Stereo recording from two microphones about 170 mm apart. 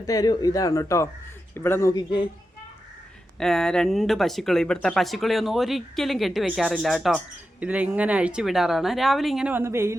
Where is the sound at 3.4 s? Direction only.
5° left (ahead or behind).